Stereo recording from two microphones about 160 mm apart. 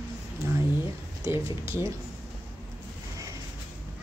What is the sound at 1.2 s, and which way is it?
Speech, 20° right (ahead or behind).